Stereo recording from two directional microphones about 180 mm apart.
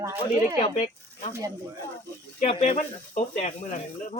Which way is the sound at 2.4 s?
40° left (ahead or behind).